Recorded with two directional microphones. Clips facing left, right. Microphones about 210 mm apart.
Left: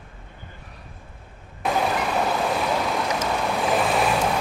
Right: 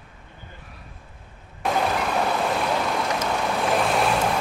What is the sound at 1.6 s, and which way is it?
Vehicle, centre (ahead or behind).